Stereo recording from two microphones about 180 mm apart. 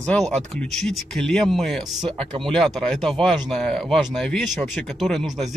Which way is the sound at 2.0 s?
30° right (ahead or behind).